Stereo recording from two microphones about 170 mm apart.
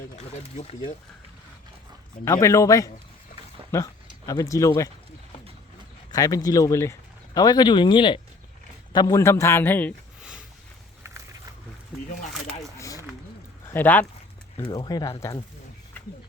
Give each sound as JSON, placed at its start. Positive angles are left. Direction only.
{"t": 0.2, "sound": "speech", "side_deg": 40}
{"t": 2.2, "sound": "a man's voice", "side_deg": 15}
{"t": 6.1, "sound": "a man's voice", "side_deg": 20}
{"t": 12.7, "sound": "a sound", "side_deg": 20}
{"t": 13.7, "sound": "a man's voice", "side_deg": 10}
{"t": 14.6, "sound": "speech", "side_deg": 25}